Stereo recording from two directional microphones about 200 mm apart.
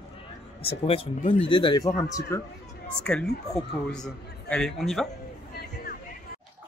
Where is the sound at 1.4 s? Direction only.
25° left (ahead or behind).